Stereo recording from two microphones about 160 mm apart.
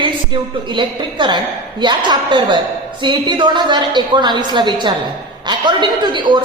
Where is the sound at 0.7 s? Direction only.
30° right (ahead or behind).